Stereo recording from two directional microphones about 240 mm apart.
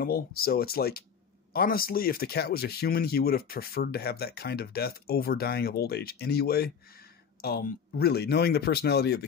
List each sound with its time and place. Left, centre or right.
0.0 s speech: left